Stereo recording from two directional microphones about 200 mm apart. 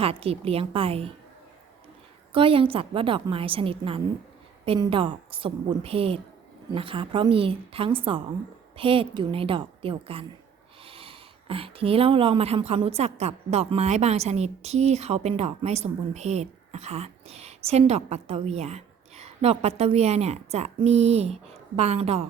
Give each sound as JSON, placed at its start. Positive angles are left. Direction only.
{"t": 0.0, "sound": "a woman's voice", "side_deg": -30}
{"t": 2.3, "sound": "a woman's voice", "side_deg": -25}